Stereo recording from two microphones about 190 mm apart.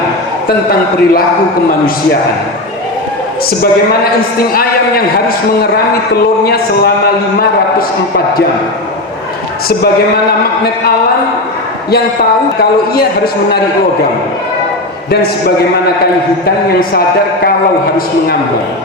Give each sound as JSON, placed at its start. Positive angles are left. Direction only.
{"t": 0.4, "sound": "a man's voice", "side_deg": 50}
{"t": 6.4, "sound": "a man's voice", "side_deg": 55}
{"t": 12.9, "sound": "a man's voice", "side_deg": 55}